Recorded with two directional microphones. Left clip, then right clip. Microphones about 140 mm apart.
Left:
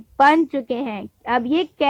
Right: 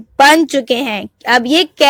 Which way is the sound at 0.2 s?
35° right (ahead or behind).